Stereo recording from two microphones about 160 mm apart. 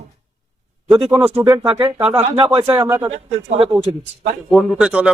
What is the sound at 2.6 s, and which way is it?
Speech, 15° right (ahead or behind).